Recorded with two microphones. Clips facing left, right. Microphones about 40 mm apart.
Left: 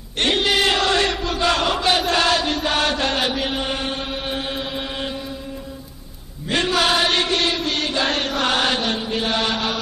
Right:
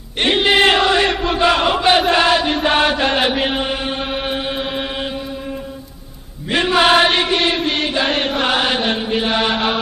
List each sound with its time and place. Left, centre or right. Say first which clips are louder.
0.2 s chant: right 5 dB; right
4.0 s chant: right 5 dB; right
6.5 s chant: right 6 dB; right